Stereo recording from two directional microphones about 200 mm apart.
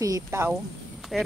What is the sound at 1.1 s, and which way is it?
Speech, centre (ahead or behind).